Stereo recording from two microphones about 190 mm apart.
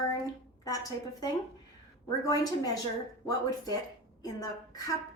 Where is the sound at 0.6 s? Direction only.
20° left (ahead or behind).